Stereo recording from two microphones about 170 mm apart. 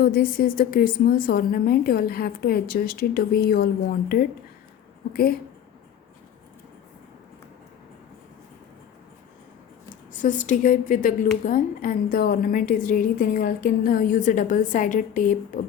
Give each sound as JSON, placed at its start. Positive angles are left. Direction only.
{"t": 0.0, "sound": "a woman's voice", "side_deg": 60}
{"t": 9.9, "sound": "a woman's voice", "side_deg": 50}